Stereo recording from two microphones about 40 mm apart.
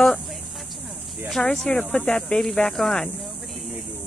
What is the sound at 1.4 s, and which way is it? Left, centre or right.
A woman's voice, left.